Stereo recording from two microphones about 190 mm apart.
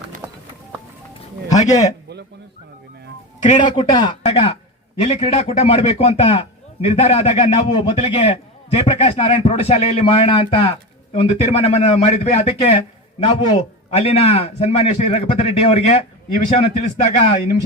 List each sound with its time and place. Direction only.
1.5 s speech: 40° left (ahead or behind)
3.6 s a man's voice: 25° left (ahead or behind)